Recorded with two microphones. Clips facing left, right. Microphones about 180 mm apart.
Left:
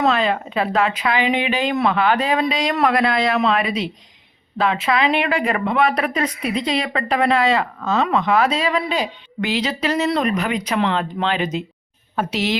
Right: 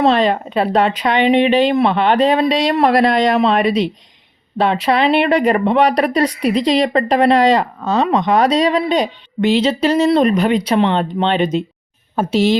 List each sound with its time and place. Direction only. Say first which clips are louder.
0.0 s speech: right 5 dB; 35° right (ahead or behind)